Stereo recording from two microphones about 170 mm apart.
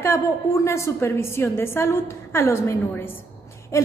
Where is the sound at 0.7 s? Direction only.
15° left (ahead or behind).